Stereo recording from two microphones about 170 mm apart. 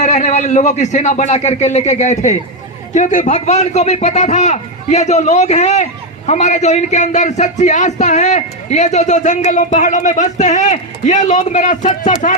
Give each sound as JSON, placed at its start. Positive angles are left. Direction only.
{"t": 0.0, "sound": "a man's voice", "side_deg": 45}